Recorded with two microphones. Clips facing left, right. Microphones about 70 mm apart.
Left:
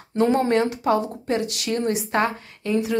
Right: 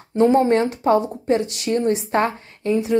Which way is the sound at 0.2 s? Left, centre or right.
Right.